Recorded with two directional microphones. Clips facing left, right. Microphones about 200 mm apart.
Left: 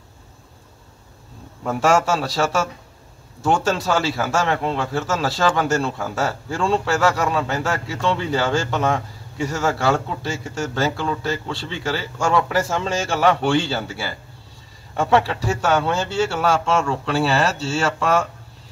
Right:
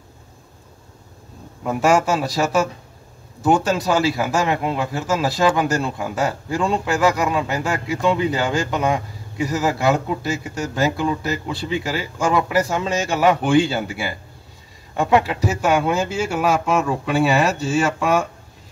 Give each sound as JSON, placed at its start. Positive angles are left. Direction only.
{"t": 1.6, "sound": "a man's voice", "side_deg": 0}
{"t": 1.9, "sound": "speech", "side_deg": -15}
{"t": 3.7, "sound": "speech", "side_deg": -15}